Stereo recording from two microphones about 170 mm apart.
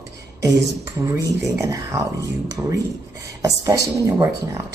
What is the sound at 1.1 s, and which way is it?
Speech, 15° right (ahead or behind).